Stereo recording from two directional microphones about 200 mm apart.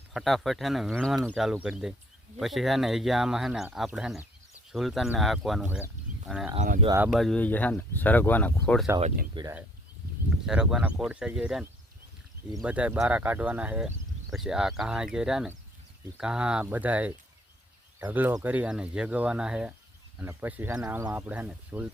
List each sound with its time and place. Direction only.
0.1 s speech: centre (ahead or behind)
6.6 s speech: 35° right (ahead or behind)
6.8 s speech: 15° right (ahead or behind)
7.1 s speech: centre (ahead or behind)
9.3 s speech: 20° right (ahead or behind)
10.4 s speech: 5° right (ahead or behind)